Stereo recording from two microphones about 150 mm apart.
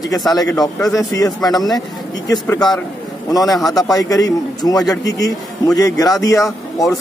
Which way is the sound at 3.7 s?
25° left (ahead or behind).